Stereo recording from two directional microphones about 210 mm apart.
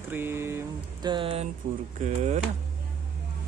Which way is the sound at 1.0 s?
25° right (ahead or behind).